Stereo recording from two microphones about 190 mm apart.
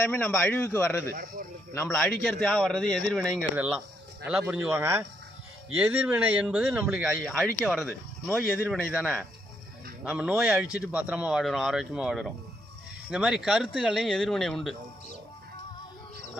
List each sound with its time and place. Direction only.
0.0 s a man's voice: 10° left (ahead or behind)
1.1 s speech: 45° right (ahead or behind)
1.7 s speech: 15° left (ahead or behind)
3.5 s a man's voice: 10° right (ahead or behind); by 8.9 s 10° left (ahead or behind)
8.9 s speech: centre (ahead or behind)